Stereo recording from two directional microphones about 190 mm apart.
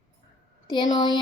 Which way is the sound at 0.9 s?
25° left (ahead or behind).